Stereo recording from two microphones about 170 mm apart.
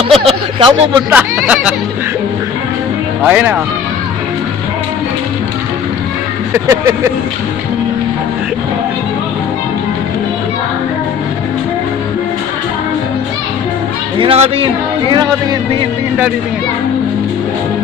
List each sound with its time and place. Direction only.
0.1 s speech: 30° right (ahead or behind)
1.1 s speech: 5° right (ahead or behind)
3.2 s speech: 5° right (ahead or behind)
6.5 s speech: 15° right (ahead or behind)
14.2 s speech: 35° right (ahead or behind)